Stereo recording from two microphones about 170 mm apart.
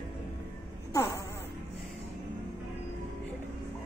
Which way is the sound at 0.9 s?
15° left (ahead or behind).